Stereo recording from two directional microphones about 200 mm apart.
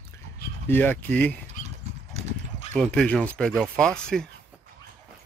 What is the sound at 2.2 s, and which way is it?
Clip-clop, 35° right (ahead or behind).